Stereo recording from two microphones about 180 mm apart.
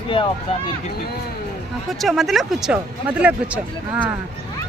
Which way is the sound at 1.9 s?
Centre (ahead or behind).